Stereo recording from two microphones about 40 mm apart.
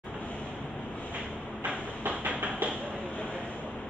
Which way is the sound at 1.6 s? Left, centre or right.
Right.